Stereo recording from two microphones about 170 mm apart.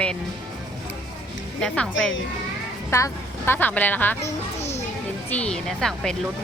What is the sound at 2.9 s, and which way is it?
Speech, 15° left (ahead or behind).